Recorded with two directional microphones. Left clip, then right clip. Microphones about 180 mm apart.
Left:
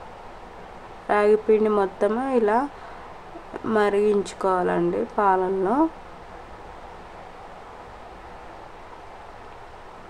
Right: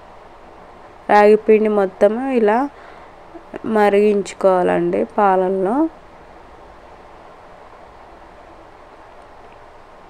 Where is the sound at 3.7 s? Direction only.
25° right (ahead or behind).